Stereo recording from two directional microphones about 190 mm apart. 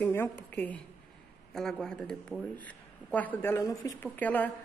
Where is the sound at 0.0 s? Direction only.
10° left (ahead or behind).